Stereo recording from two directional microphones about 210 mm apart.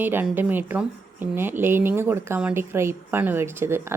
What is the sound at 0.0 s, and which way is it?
A woman's voice, 10° right (ahead or behind).